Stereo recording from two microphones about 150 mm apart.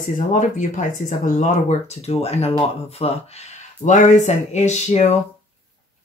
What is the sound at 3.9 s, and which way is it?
Speech, 55° left (ahead or behind).